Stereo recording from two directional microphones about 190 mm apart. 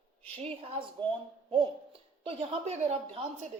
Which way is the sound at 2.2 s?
35° right (ahead or behind).